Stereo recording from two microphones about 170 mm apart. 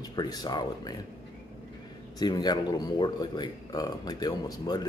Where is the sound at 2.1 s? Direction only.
25° left (ahead or behind).